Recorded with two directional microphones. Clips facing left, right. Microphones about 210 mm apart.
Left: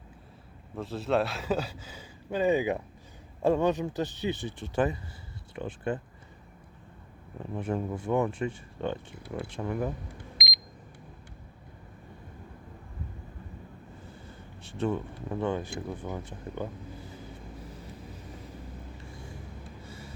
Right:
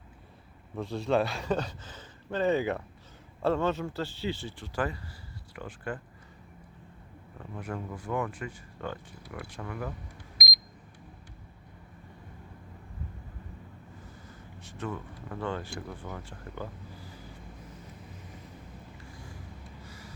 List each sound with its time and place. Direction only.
0.8 s speech: centre (ahead or behind); by 6.0 s 25° left (ahead or behind)
7.3 s speech: 25° left (ahead or behind)
14.0 s speech: 30° left (ahead or behind)
19.8 s vehicle: 25° left (ahead or behind)